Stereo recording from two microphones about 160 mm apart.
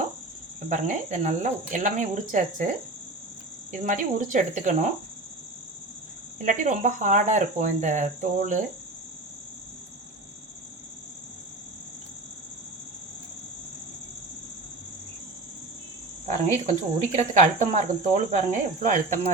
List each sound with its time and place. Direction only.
0.7 s speech: 50° right (ahead or behind)
3.7 s speech: 50° right (ahead or behind)
6.4 s speech: 50° right (ahead or behind)
16.2 s speech: 45° right (ahead or behind)